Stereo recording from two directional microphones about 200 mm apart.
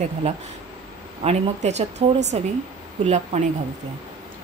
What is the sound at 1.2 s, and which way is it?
Speech, 30° right (ahead or behind).